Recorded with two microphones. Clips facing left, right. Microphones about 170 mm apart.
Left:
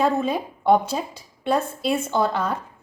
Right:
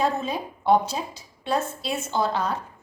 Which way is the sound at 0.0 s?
55° left (ahead or behind).